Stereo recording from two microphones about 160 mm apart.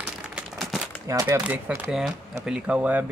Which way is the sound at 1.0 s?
20° right (ahead or behind).